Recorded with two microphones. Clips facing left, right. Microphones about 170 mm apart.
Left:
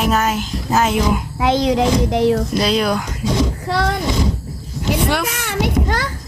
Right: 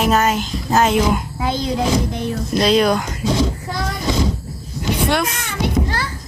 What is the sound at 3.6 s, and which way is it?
Speech, 75° left (ahead or behind).